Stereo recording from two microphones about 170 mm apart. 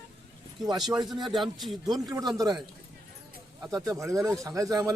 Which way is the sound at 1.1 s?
Centre (ahead or behind).